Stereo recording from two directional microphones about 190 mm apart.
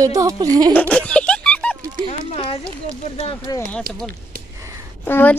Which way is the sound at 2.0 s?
30° left (ahead or behind).